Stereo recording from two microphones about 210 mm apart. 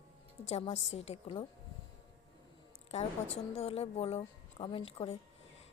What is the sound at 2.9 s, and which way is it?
A woman's voice, 30° left (ahead or behind).